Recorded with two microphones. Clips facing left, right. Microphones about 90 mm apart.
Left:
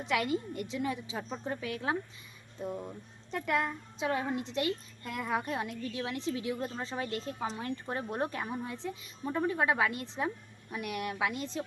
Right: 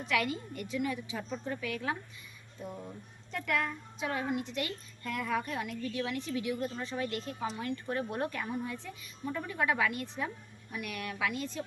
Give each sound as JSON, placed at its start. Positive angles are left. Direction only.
{"t": 0.0, "sound": "speech", "side_deg": 25}